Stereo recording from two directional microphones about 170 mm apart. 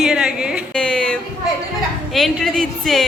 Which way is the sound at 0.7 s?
5° left (ahead or behind).